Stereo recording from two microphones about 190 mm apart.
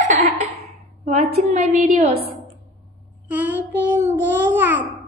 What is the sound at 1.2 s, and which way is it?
A woman's voice, 35° right (ahead or behind).